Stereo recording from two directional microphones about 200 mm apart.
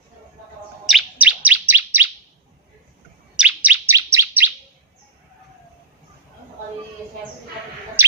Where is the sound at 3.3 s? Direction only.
5° right (ahead or behind).